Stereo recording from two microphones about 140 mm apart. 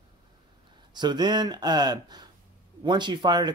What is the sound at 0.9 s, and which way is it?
Speech, 30° right (ahead or behind).